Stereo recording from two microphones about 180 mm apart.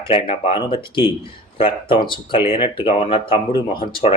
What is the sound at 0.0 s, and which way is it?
Speech, 35° left (ahead or behind).